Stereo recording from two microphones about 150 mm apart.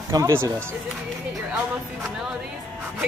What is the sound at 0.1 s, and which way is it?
Speech, 20° right (ahead or behind).